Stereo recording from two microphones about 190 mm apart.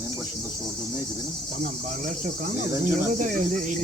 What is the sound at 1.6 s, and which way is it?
Speech, 40° right (ahead or behind).